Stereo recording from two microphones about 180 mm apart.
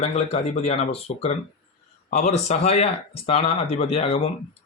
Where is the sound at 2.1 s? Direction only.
40° left (ahead or behind).